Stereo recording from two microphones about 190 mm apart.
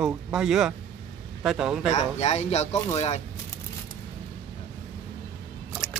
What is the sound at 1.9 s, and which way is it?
Speech, 35° left (ahead or behind).